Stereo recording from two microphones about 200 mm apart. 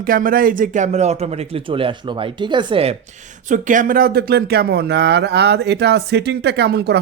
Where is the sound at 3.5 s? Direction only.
40° right (ahead or behind).